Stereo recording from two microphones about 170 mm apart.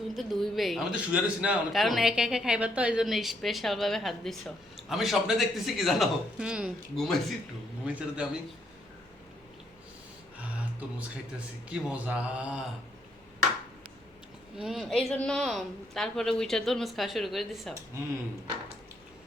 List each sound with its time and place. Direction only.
0.2 s a man's voice: centre (ahead or behind)
11.3 s a man's voice: 5° right (ahead or behind)
14.6 s a man's voice: centre (ahead or behind)
17.9 s a man's voice: 15° right (ahead or behind)